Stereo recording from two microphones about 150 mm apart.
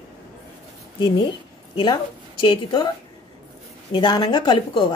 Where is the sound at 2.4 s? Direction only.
30° left (ahead or behind).